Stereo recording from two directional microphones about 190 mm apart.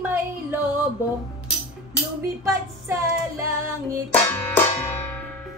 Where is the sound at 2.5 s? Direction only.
15° right (ahead or behind).